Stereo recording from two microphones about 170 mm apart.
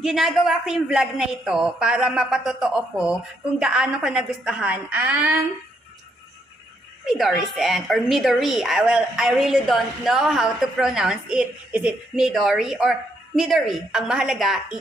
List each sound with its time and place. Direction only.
0.0 s a woman's voice: centre (ahead or behind)
7.1 s a woman's voice: centre (ahead or behind)